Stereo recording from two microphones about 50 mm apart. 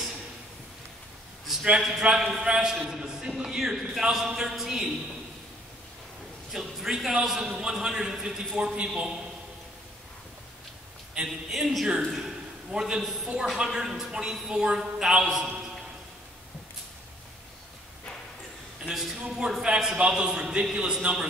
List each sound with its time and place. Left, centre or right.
1.5 s a sound: centre
1.8 s a man's voice: centre
6.5 s a man's voice: centre
11.2 s a man's voice: centre
18.9 s a man's voice: centre
19.6 s a man's voice: centre